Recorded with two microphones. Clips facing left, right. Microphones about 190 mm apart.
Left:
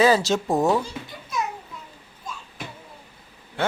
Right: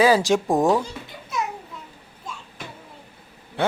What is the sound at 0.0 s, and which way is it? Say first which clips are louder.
Speech: right 1 dB; 10° right (ahead or behind).